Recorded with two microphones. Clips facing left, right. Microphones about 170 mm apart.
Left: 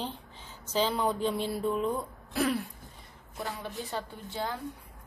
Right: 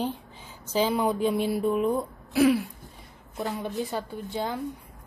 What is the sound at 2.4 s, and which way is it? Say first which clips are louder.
Throat clearing: right 8 dB; centre (ahead or behind).